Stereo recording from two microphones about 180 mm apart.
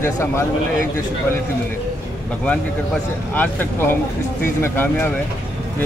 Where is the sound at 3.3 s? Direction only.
10° left (ahead or behind).